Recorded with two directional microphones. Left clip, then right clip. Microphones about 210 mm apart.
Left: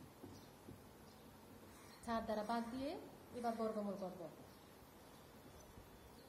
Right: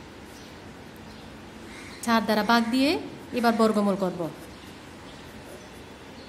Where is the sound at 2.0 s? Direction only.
30° right (ahead or behind).